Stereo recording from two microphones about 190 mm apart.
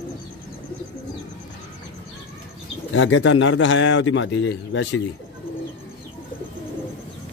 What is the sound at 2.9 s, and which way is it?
A man's voice, 90° left.